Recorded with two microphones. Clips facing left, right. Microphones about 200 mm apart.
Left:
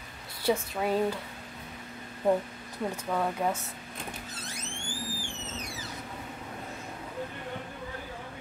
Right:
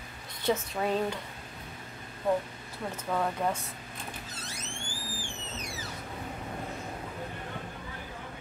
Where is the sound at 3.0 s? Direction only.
Centre (ahead or behind).